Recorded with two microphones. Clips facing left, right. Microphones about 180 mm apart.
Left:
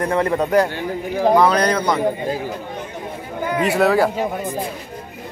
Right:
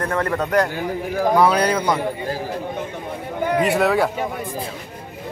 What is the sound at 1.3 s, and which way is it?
Speech, 10° right (ahead or behind).